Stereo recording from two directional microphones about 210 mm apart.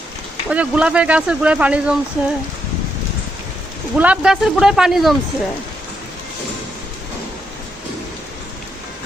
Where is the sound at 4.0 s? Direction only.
5° right (ahead or behind).